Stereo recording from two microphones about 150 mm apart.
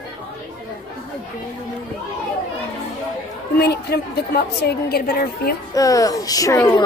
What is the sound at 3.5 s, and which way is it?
A woman's voice, 90° left.